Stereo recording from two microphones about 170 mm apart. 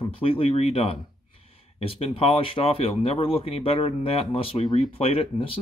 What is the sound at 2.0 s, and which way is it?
Speech, 35° left (ahead or behind).